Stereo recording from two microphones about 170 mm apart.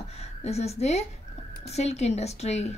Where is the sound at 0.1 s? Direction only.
40° left (ahead or behind).